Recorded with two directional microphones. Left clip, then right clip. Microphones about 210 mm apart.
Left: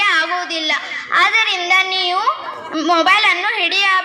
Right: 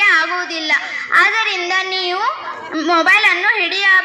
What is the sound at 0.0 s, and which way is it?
Child singing, 40° left (ahead or behind).